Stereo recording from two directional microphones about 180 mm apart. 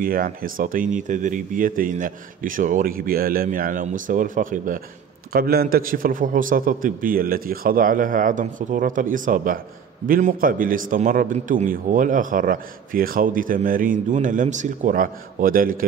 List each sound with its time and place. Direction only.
0.0 s a man's voice: 50° right (ahead or behind)